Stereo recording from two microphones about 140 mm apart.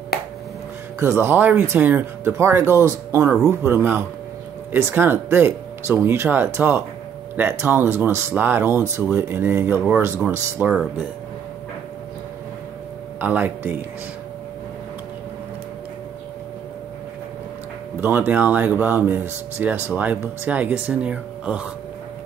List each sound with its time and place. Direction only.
0.9 s speech: 15° right (ahead or behind)
13.2 s speech: 15° right (ahead or behind)
18.0 s speech: 15° right (ahead or behind)